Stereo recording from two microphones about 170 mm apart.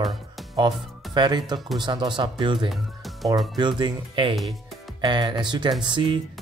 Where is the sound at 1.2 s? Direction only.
25° right (ahead or behind).